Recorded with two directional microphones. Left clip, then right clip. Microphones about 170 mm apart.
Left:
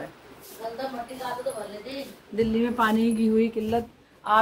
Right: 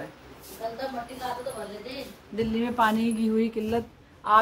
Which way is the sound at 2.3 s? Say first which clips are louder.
Left 2 dB; 10° right (ahead or behind).